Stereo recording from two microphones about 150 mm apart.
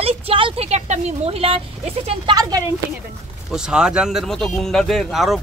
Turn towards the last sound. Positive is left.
turn(degrees=0)  # may be behind; listen again after turning